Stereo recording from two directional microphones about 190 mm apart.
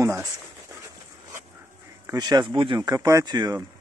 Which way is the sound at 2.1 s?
20° right (ahead or behind).